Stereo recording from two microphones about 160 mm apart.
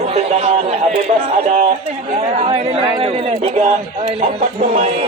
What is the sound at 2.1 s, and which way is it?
Speech, 40° right (ahead or behind).